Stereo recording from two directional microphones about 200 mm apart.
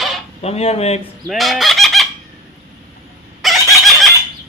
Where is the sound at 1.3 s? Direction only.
Centre (ahead or behind).